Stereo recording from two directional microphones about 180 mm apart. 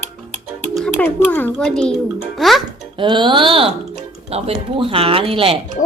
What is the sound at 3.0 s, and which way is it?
Speech, 25° right (ahead or behind).